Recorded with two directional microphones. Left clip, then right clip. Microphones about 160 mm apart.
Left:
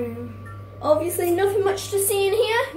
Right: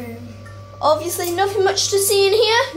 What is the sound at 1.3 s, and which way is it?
Speech, 25° right (ahead or behind).